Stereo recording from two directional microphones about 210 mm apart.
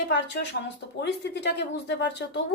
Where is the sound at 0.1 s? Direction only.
55° left (ahead or behind).